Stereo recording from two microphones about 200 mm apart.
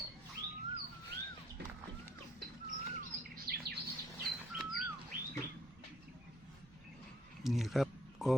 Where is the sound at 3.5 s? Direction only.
50° right (ahead or behind).